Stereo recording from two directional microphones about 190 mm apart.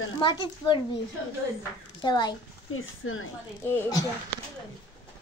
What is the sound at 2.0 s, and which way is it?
Speech, 25° left (ahead or behind).